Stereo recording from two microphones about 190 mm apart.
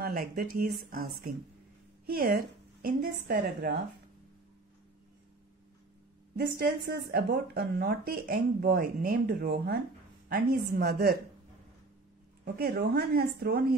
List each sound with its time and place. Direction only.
0.0 s a woman's voice: 50° right (ahead or behind)
6.3 s a woman's voice: 60° right (ahead or behind)
12.5 s speech: 55° right (ahead or behind)